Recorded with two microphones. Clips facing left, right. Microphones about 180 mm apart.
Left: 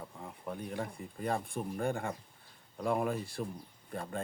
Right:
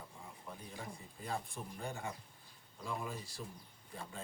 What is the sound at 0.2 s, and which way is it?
Speech, 60° left (ahead or behind).